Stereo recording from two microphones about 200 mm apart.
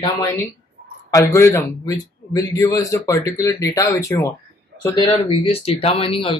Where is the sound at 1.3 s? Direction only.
15° left (ahead or behind).